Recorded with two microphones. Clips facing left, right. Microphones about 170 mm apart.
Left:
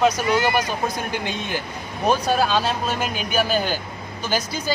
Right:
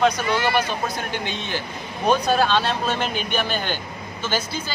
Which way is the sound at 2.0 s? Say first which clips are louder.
Right 1 dB; 5° left (ahead or behind).